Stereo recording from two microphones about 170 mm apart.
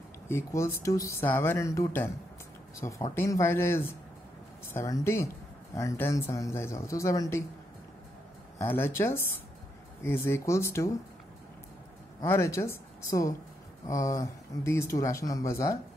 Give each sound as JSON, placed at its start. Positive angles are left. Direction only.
{"t": 0.3, "sound": "speech", "side_deg": 15}
{"t": 8.5, "sound": "speech", "side_deg": 15}
{"t": 12.2, "sound": "a woman's voice", "side_deg": 15}